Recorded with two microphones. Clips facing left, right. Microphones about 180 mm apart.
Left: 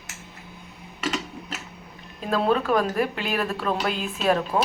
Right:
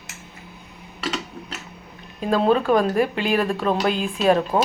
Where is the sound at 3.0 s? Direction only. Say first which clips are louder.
Right 5 dB; centre (ahead or behind).